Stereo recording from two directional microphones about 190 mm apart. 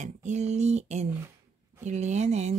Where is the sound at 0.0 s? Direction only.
40° right (ahead or behind).